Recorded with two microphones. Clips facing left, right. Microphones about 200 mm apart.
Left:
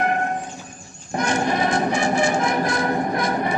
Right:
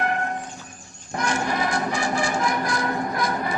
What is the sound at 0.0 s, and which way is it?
Music, 20° left (ahead or behind).